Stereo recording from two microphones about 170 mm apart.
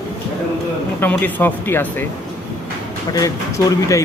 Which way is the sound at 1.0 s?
10° left (ahead or behind).